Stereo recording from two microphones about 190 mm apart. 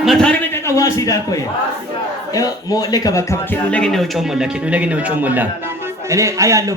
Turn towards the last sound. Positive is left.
turn(degrees=-15)  # may be behind; listen again after turning